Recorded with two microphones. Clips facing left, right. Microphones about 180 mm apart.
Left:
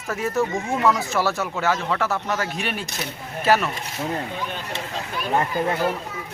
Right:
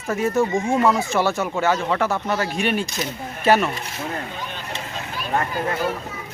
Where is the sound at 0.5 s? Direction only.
15° right (ahead or behind).